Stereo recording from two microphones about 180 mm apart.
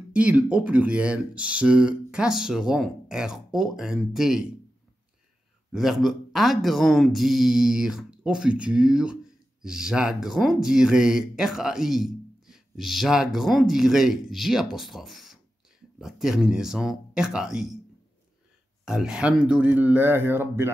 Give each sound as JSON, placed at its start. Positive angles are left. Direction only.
{"t": 0.1, "sound": "speech", "side_deg": -5}
{"t": 5.7, "sound": "speech", "side_deg": 0}
{"t": 18.9, "sound": "speech", "side_deg": -5}